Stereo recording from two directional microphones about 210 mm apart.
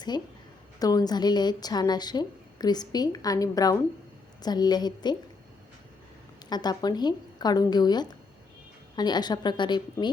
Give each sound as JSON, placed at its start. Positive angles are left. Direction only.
{"t": 0.1, "sound": "a woman's voice", "side_deg": 20}
{"t": 6.5, "sound": "a woman's voice", "side_deg": 20}